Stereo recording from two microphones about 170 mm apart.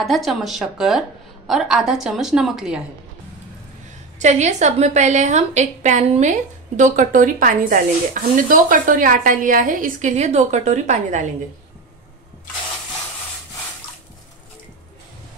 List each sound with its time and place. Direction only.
0.0 s a woman's voice: centre (ahead or behind)
4.2 s a woman's voice: 45° right (ahead or behind)